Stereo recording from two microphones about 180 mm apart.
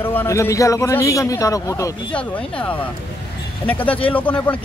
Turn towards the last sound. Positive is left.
turn(degrees=10)  # may be behind; listen again after turning